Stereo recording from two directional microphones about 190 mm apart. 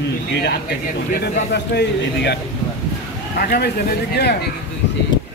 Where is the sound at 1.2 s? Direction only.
60° left (ahead or behind).